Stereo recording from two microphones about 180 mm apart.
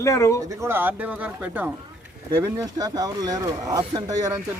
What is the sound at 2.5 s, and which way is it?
Speech, 20° right (ahead or behind).